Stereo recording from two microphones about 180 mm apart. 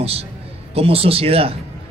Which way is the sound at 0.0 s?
35° right (ahead or behind).